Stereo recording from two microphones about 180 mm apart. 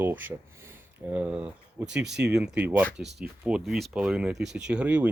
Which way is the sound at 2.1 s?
70° right (ahead or behind).